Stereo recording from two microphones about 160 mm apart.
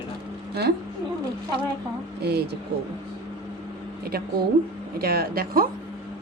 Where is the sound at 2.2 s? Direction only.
90° right.